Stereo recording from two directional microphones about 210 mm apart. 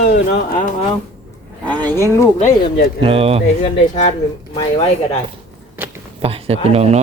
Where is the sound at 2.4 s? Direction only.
45° left (ahead or behind).